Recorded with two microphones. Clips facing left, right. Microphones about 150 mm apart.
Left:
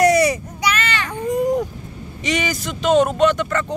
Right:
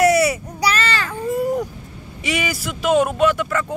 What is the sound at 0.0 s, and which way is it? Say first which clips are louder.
Baby cry: left 1 dB; 5° right (ahead or behind).